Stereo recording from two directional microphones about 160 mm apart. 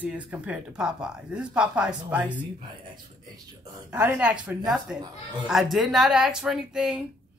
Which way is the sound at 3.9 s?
10° right (ahead or behind).